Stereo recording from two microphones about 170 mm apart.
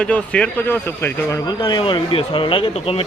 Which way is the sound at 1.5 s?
25° left (ahead or behind).